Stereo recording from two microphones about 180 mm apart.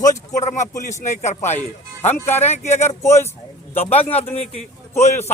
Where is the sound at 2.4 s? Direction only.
40° left (ahead or behind).